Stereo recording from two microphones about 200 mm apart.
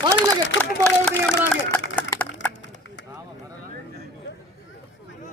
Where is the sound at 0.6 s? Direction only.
5° left (ahead or behind).